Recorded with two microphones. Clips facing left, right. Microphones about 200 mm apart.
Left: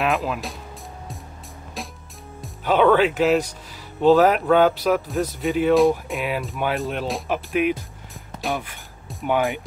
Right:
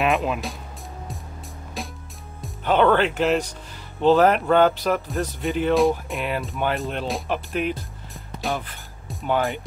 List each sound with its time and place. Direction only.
0.0 s speech: centre (ahead or behind)
1.8 s music: centre (ahead or behind)
2.4 s speech: 5° left (ahead or behind)
8.4 s music: centre (ahead or behind)
9.2 s speech: 15° left (ahead or behind)